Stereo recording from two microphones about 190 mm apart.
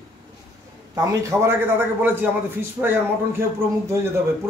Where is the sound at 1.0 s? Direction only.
15° right (ahead or behind).